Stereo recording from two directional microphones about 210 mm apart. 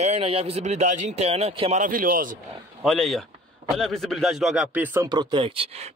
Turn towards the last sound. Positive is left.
turn(degrees=-30)  # may be behind; listen again after turning